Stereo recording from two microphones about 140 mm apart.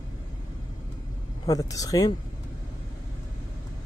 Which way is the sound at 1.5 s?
25° left (ahead or behind).